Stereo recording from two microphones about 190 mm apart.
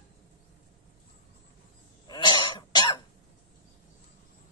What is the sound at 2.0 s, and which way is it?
Cough, 25° left (ahead or behind).